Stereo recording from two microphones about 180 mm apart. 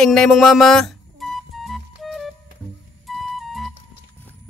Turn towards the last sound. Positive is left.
turn(degrees=0)  # may be behind; listen again after turning